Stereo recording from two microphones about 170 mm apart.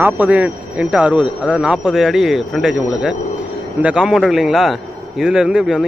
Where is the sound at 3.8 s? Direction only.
5° right (ahead or behind).